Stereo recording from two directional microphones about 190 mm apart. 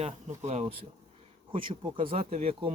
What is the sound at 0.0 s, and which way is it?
Speech, 35° right (ahead or behind).